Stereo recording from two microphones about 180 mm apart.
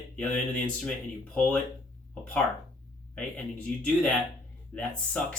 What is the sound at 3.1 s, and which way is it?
Speech, 5° left (ahead or behind).